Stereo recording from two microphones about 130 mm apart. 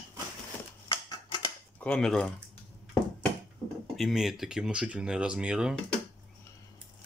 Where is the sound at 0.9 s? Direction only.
40° left (ahead or behind).